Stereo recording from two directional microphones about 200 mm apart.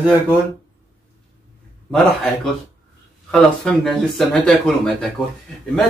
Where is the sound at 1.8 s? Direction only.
Centre (ahead or behind).